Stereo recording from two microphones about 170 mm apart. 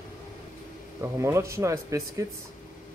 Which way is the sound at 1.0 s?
15° right (ahead or behind).